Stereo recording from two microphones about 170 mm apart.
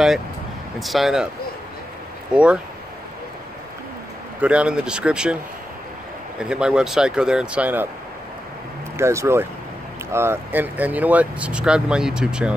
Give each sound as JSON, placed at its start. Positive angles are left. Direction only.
{"t": 0.7, "sound": "speech", "side_deg": 0}
{"t": 2.3, "sound": "speech", "side_deg": -5}
{"t": 4.4, "sound": "speech", "side_deg": -5}
{"t": 6.4, "sound": "speech", "side_deg": -5}
{"t": 8.9, "sound": "speech", "side_deg": -15}